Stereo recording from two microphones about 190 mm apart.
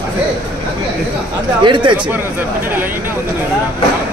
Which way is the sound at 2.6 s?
10° right (ahead or behind).